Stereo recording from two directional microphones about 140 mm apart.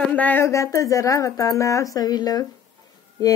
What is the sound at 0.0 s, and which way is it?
Speech, 10° left (ahead or behind).